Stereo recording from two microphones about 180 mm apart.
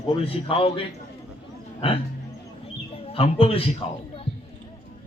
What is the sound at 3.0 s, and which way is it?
Speech, 30° left (ahead or behind).